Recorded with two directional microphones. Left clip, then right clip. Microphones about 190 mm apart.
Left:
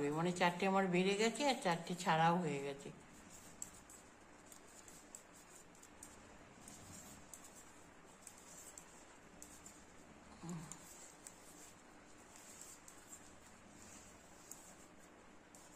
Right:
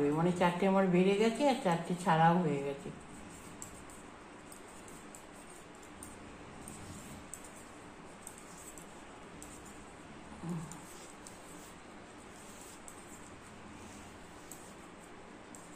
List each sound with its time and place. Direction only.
0.1 s a woman's voice: 20° left (ahead or behind)